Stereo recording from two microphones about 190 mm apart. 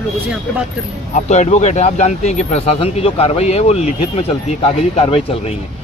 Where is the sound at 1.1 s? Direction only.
40° left (ahead or behind).